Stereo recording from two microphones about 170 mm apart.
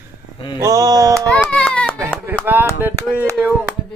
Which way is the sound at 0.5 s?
20° right (ahead or behind).